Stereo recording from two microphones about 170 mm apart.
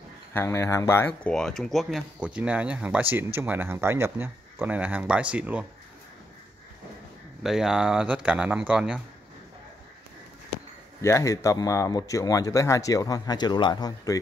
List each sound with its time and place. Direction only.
0.3 s speech: 15° left (ahead or behind)
1.3 s speech: 5° left (ahead or behind)
7.4 s speech: 5° right (ahead or behind)
11.0 s a man's voice: 20° left (ahead or behind)